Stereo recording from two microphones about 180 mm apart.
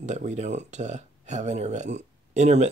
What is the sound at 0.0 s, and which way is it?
Speech, 40° right (ahead or behind).